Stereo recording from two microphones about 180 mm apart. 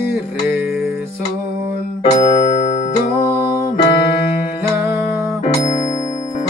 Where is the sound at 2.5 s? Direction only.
40° left (ahead or behind).